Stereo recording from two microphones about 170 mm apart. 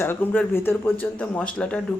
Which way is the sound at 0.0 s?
10° left (ahead or behind).